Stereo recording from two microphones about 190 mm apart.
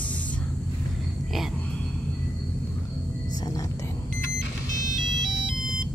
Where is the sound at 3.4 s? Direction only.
15° left (ahead or behind).